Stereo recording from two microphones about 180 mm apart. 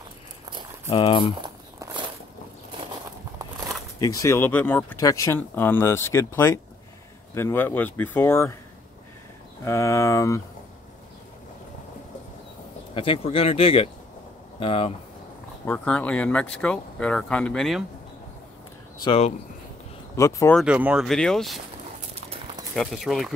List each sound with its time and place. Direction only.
0.8 s speech: 30° left (ahead or behind)
1.4 s a sound: 25° right (ahead or behind)
4.0 s speech: 20° left (ahead or behind)
9.7 s speech: 15° left (ahead or behind)
12.9 s speech: 30° left (ahead or behind)
15.6 s speech: 10° left (ahead or behind)
18.9 s speech: 30° left (ahead or behind)
20.2 s speech: 15° left (ahead or behind)
20.5 s speech: 5° right (ahead or behind)
22.8 s speech: centre (ahead or behind)